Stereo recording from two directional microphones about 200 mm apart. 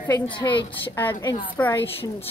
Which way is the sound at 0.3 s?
25° left (ahead or behind).